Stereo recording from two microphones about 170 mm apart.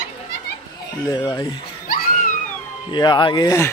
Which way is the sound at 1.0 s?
25° left (ahead or behind).